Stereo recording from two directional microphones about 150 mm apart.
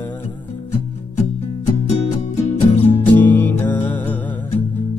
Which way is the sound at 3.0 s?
10° left (ahead or behind).